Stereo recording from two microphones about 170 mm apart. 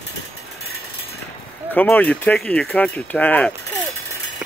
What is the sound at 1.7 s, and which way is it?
Speech, 10° left (ahead or behind).